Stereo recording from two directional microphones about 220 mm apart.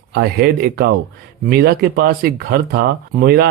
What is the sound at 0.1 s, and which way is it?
Speech, 45° right (ahead or behind).